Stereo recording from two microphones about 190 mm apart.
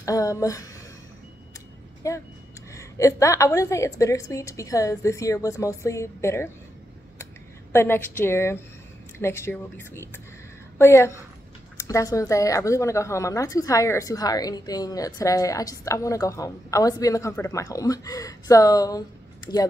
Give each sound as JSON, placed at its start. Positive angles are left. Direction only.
{"t": 0.0, "sound": "speech", "side_deg": 15}
{"t": 2.0, "sound": "speech", "side_deg": 15}
{"t": 7.7, "sound": "speech", "side_deg": 10}